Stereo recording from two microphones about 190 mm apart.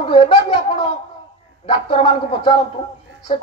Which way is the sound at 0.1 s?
30° left (ahead or behind).